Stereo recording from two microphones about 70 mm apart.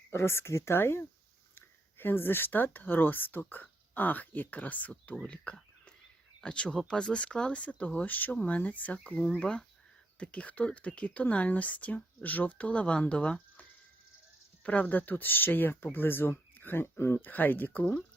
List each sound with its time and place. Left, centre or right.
0.1 s speech: left